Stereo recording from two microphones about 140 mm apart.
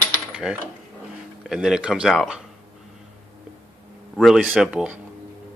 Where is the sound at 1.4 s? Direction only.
5° right (ahead or behind).